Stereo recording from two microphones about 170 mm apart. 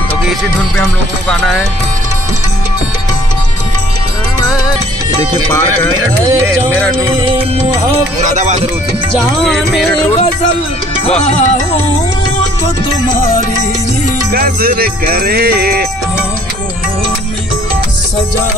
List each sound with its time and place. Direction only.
8.3 s speech: 45° right (ahead or behind)
9.4 s music: 5° left (ahead or behind)
11.1 s music: 40° left (ahead or behind)
13.1 s music: 55° left (ahead or behind)
14.3 s music: 60° right (ahead or behind)